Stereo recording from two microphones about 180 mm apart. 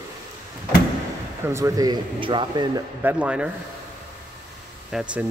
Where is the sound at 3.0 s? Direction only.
10° right (ahead or behind).